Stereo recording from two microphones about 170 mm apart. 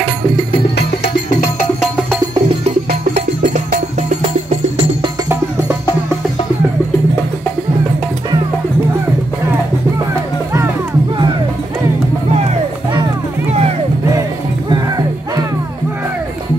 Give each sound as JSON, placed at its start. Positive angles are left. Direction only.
{"t": 3.4, "sound": "music", "side_deg": -45}
{"t": 13.5, "sound": "music", "side_deg": -40}
{"t": 14.7, "sound": "music", "side_deg": -25}